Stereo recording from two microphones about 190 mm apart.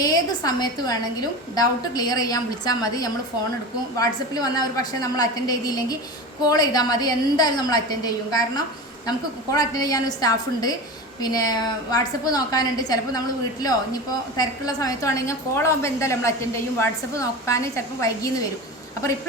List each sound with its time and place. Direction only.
0.0 s a woman's voice: 20° left (ahead or behind)